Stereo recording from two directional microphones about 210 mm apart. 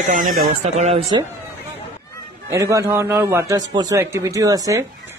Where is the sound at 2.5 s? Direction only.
15° right (ahead or behind).